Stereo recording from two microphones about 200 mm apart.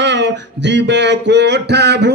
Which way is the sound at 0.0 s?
60° right (ahead or behind).